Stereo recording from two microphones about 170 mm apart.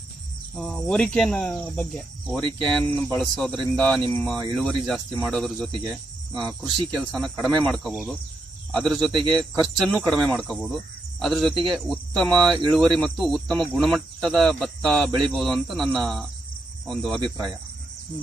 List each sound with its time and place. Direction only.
0.6 s speech: 5° left (ahead or behind)
5.7 s speech: 25° right (ahead or behind)
7.1 s speech: 5° left (ahead or behind)